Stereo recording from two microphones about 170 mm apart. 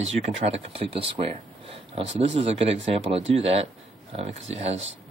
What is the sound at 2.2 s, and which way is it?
Speech, 40° right (ahead or behind).